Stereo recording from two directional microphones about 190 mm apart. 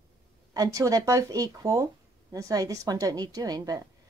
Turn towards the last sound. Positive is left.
turn(degrees=-20)  # may be behind; listen again after turning